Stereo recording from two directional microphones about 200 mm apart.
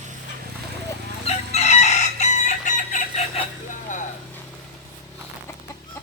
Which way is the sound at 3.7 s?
40° left (ahead or behind).